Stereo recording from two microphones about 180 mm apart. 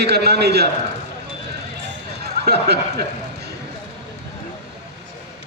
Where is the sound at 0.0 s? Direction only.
65° right (ahead or behind).